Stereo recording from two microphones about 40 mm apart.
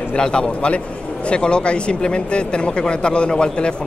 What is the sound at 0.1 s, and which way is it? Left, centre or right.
Speech, left.